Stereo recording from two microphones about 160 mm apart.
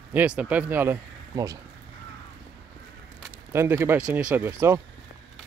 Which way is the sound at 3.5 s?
15° right (ahead or behind).